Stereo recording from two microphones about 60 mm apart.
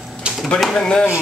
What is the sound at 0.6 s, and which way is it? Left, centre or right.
Speech, centre.